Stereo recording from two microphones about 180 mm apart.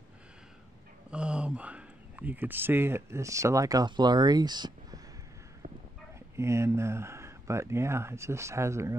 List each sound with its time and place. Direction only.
1.1 s speech: 5° right (ahead or behind); by 5.0 s 25° right (ahead or behind)
6.3 s speech: 15° right (ahead or behind)